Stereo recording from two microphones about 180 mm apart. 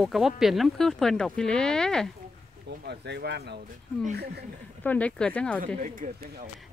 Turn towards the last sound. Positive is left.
turn(degrees=-45)  # may be behind; listen again after turning